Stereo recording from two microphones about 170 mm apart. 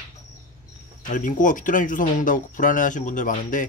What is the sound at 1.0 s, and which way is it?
Speech, 50° left (ahead or behind).